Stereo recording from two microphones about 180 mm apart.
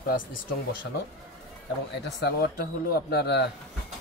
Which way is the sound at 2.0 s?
65° left (ahead or behind).